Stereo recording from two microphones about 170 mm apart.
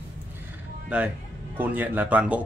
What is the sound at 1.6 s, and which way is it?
Speech, 10° right (ahead or behind).